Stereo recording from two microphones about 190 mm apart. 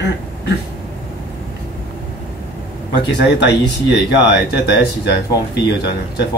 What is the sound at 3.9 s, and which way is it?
Speech, 60° left (ahead or behind).